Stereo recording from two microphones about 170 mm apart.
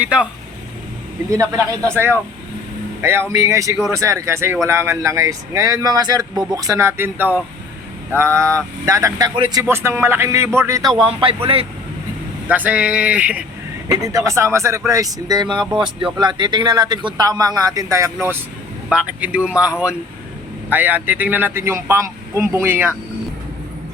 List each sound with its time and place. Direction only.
0.0 s speech: 5° right (ahead or behind)
1.3 s speech: 20° right (ahead or behind)
3.0 s speech: 15° right (ahead or behind); by 11.3 s 30° right (ahead or behind)
12.5 s speech: 10° right (ahead or behind)
13.8 s speech: 20° right (ahead or behind)
18.9 s speech: 5° right (ahead or behind)